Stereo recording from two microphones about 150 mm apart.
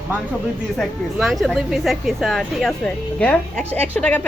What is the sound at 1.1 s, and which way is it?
Speech, centre (ahead or behind).